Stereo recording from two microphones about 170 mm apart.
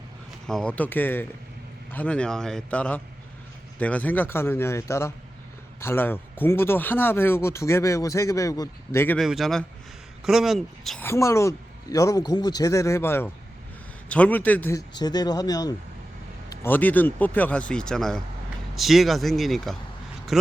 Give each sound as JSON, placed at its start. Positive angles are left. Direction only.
{"t": 0.4, "sound": "speech", "side_deg": 5}
{"t": 9.1, "sound": "speech", "side_deg": 0}
{"t": 11.0, "sound": "speech", "side_deg": 15}
{"t": 16.5, "sound": "speech", "side_deg": 10}
{"t": 20.3, "sound": "a sound", "side_deg": 0}